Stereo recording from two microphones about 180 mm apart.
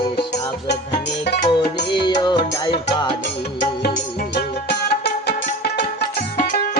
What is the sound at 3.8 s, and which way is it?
Music, 65° left (ahead or behind).